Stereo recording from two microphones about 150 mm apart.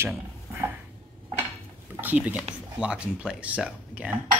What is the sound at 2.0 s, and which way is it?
Speech, 10° right (ahead or behind).